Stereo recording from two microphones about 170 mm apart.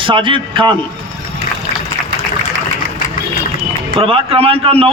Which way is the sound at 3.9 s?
35° right (ahead or behind).